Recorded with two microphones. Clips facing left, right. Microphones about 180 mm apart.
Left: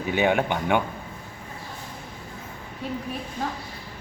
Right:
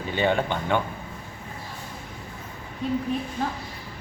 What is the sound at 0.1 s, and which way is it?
Speech, 10° left (ahead or behind).